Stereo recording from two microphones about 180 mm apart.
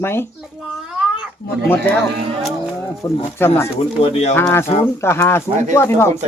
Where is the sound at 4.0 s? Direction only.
35° left (ahead or behind).